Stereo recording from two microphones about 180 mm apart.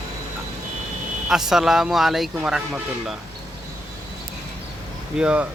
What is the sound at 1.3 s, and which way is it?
Speech, 5° right (ahead or behind).